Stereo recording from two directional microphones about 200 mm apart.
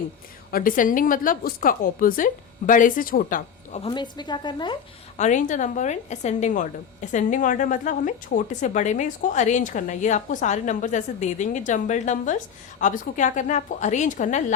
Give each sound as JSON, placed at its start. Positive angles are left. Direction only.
{"t": 0.5, "sound": "a woman's voice", "side_deg": 45}
{"t": 5.1, "sound": "a woman's voice", "side_deg": 35}